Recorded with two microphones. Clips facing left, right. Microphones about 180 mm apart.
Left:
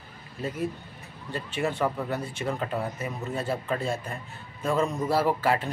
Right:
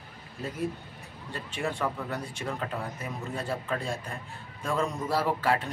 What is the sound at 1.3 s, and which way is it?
Speech, 5° left (ahead or behind).